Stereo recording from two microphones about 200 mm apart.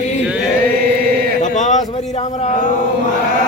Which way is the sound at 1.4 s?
35° left (ahead or behind).